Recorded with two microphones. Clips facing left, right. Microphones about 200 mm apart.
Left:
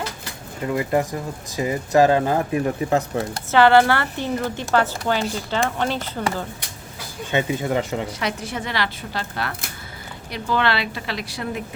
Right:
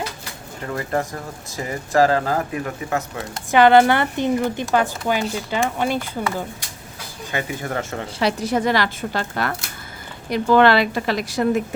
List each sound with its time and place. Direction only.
0.7 s speech: 15° left (ahead or behind)
2.9 s speech: 35° left (ahead or behind)
3.5 s a woman's voice: 15° right (ahead or behind)
7.3 s speech: 25° left (ahead or behind)
8.2 s speech: 35° right (ahead or behind)